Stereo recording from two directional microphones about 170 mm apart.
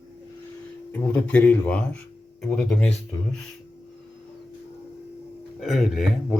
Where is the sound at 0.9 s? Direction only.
10° left (ahead or behind).